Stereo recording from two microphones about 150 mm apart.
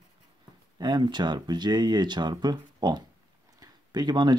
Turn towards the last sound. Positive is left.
turn(degrees=-30)  # may be behind; listen again after turning